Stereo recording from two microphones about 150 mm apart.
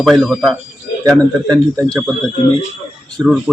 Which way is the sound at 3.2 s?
10° right (ahead or behind).